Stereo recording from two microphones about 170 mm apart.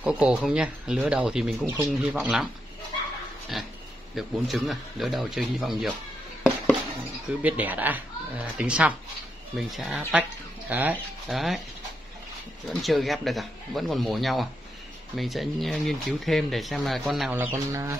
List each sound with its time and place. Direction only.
0.0 s speech: 5° right (ahead or behind)
4.1 s speech: centre (ahead or behind)
7.2 s speech: 10° right (ahead or behind)
11.2 s speech: centre (ahead or behind)
12.6 s speech: centre (ahead or behind)
17.3 s speech: 15° right (ahead or behind)